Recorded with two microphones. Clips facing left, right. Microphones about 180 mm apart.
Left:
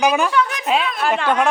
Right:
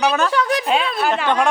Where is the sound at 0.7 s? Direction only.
Centre (ahead or behind).